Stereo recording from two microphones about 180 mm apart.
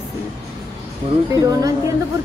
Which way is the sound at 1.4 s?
20° right (ahead or behind).